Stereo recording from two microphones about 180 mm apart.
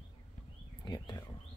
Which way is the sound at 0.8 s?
20° left (ahead or behind).